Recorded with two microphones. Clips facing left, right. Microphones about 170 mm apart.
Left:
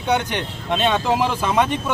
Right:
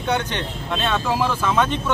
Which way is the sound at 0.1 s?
15° left (ahead or behind).